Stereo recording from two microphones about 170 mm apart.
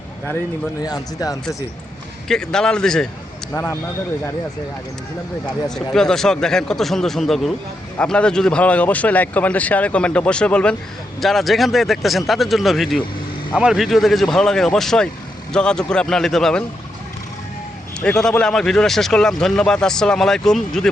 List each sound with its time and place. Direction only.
0.8 s speech: 25° left (ahead or behind)
2.2 s speech: 5° left (ahead or behind)
3.5 s a man's voice: 15° left (ahead or behind)
5.7 s a man's voice: 5° left (ahead or behind)
18.0 s speech: 5° left (ahead or behind)